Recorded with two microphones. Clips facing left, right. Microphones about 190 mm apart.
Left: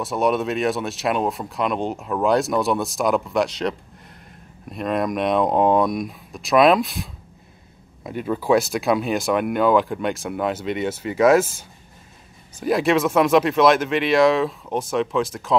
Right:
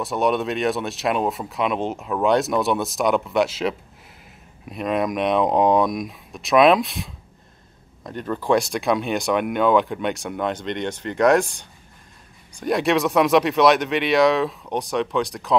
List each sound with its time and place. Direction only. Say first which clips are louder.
0.0 s speech: left 1 dB; centre (ahead or behind)